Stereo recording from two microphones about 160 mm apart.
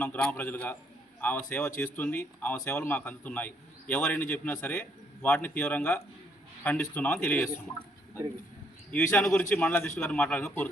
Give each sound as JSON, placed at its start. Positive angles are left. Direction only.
{"t": 0.0, "sound": "speech", "side_deg": 10}
{"t": 9.1, "sound": "speech", "side_deg": 10}